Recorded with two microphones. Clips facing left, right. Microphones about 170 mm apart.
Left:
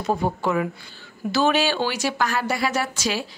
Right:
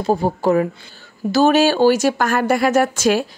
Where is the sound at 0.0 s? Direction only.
35° right (ahead or behind).